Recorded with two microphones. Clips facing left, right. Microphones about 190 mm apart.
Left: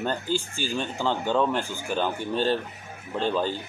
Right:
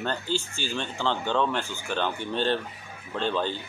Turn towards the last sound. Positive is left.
turn(degrees=10)  # may be behind; listen again after turning